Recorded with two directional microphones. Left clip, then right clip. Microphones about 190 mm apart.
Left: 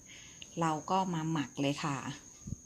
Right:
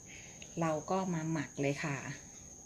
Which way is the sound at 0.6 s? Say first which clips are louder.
Left 3 dB; 40° left (ahead or behind).